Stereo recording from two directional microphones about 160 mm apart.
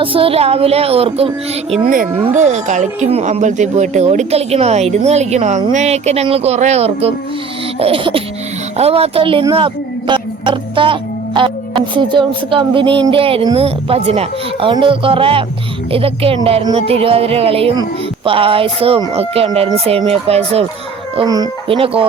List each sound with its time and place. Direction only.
0.0 s music: 35° right (ahead or behind)
2.3 s speech: 45° right (ahead or behind)
5.7 s music: 45° right (ahead or behind)
8.8 s speech: 35° right (ahead or behind)
11.3 s music: 30° right (ahead or behind)
21.2 s speech: 25° right (ahead or behind)